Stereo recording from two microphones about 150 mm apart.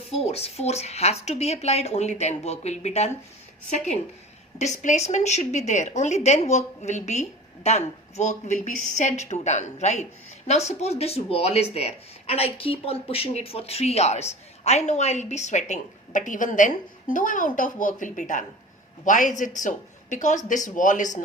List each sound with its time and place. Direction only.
0.1 s speech: 45° left (ahead or behind)
4.5 s speech: 50° left (ahead or behind)